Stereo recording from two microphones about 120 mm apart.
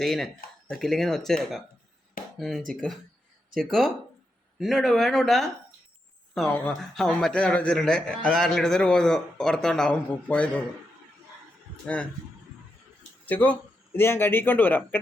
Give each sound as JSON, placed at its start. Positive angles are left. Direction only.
{"t": 0.0, "sound": "a man's voice", "side_deg": 5}
{"t": 6.5, "sound": "a man's voice", "side_deg": 15}
{"t": 13.2, "sound": "speech", "side_deg": 15}